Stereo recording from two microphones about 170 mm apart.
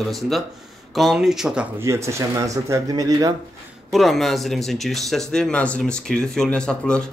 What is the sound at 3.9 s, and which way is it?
Speech, centre (ahead or behind).